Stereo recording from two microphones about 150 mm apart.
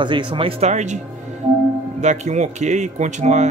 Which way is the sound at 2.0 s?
50° right (ahead or behind).